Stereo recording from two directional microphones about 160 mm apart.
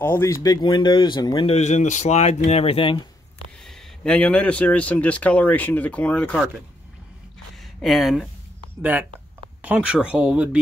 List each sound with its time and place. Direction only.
0.0 s speech: 15° left (ahead or behind); by 1.6 s 30° left (ahead or behind)
1.6 s speech: 45° left (ahead or behind)
3.6 s speech: 5° left (ahead or behind)
7.8 s speech: centre (ahead or behind)
9.6 s speech: 10° right (ahead or behind)